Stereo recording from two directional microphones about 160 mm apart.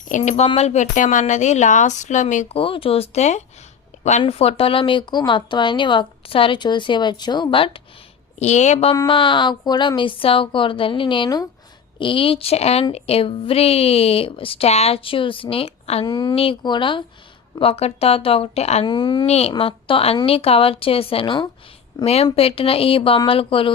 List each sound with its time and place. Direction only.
0.1 s a woman's voice: 45° left (ahead or behind)
8.4 s a woman's voice: 45° left (ahead or behind)
16.0 s speech: 25° left (ahead or behind)
16.3 s speech: 35° left (ahead or behind)
18.9 s speech: 25° left (ahead or behind)
19.2 s speech: 40° left (ahead or behind)